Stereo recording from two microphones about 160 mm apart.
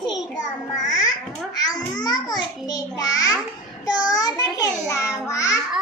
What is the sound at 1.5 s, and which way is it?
A child's voice, 25° left (ahead or behind).